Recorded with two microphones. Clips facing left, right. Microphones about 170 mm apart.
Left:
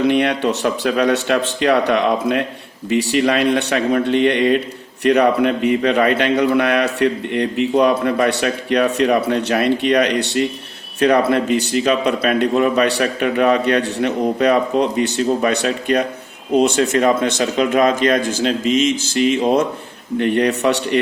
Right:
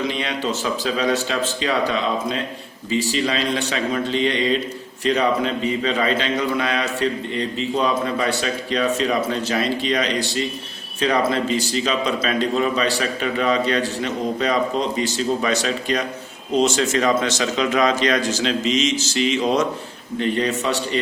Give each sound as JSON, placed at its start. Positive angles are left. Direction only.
{"t": 0.0, "sound": "a man's voice", "side_deg": 60}